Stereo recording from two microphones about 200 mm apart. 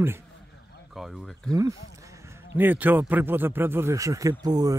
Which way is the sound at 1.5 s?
15° right (ahead or behind).